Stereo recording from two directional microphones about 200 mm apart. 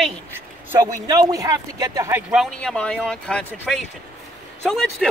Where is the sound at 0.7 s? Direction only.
15° right (ahead or behind).